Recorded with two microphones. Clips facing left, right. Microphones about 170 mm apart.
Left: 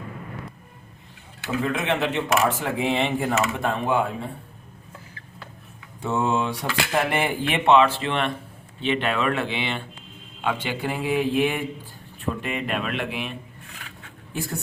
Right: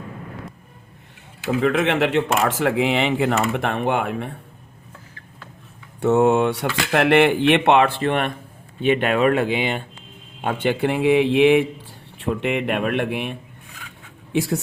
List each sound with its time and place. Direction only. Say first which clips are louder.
1.6 s speech: right 6 dB; 75° right (ahead or behind)
6.0 s speech: right 8 dB; 65° right (ahead or behind); by 9.8 s 45° right (ahead or behind)
10.4 s speech: right 6 dB; 55° right (ahead or behind)
14.3 s a woman's voice: right 9 dB; 90° right